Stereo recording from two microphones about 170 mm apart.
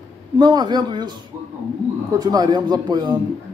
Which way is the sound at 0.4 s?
25° right (ahead or behind).